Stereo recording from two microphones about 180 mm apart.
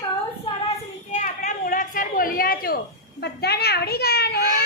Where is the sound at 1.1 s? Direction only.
45° left (ahead or behind); by 4.6 s 60° left (ahead or behind).